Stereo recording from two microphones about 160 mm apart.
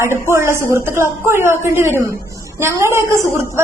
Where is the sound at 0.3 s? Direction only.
15° right (ahead or behind).